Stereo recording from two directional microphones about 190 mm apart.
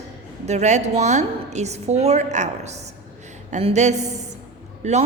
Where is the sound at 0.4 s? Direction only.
35° right (ahead or behind).